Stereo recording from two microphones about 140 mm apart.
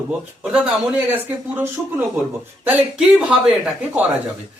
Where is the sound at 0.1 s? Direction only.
10° right (ahead or behind).